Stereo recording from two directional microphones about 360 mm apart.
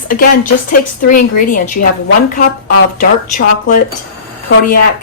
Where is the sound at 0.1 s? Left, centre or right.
Left.